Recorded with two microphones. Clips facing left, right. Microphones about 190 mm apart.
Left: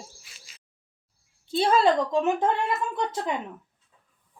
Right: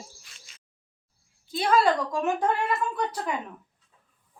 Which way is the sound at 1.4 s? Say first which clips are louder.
Left 2 dB; 30° left (ahead or behind).